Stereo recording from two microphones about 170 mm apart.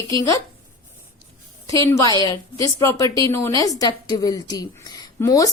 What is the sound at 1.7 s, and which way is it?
A woman's voice, 15° left (ahead or behind).